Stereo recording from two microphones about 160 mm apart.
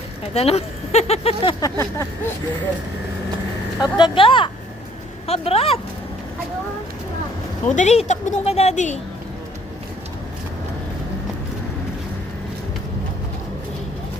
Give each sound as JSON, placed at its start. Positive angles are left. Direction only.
{"t": 0.3, "sound": "speech", "side_deg": 40}
{"t": 1.6, "sound": "a sound", "side_deg": 20}
{"t": 3.8, "sound": "speech", "side_deg": 30}
{"t": 7.6, "sound": "speech", "side_deg": 45}